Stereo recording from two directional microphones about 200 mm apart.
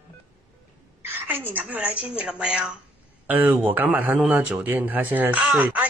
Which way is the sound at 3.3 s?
10° right (ahead or behind).